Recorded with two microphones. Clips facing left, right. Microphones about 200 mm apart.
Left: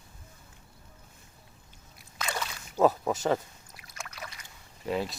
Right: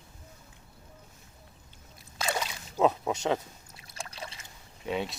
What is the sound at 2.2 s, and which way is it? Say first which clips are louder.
Splash: right 4 dB; 30° right (ahead or behind).